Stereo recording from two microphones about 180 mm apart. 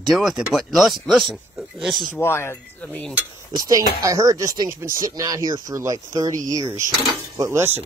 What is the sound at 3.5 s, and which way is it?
Speech, 20° right (ahead or behind).